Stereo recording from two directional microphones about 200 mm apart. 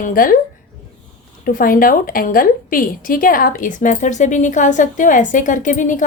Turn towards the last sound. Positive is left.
turn(degrees=40)  # may be behind; listen again after turning